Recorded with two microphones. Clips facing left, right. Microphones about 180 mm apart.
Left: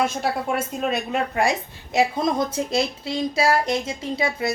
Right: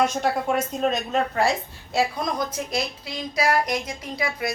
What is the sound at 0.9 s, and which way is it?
A woman's voice, 10° left (ahead or behind).